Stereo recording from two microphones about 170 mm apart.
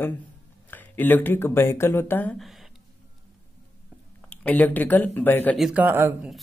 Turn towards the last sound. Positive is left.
turn(degrees=-10)  # may be behind; listen again after turning